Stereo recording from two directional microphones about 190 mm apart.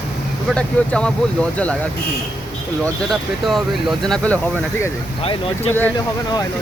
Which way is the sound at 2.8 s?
Centre (ahead or behind).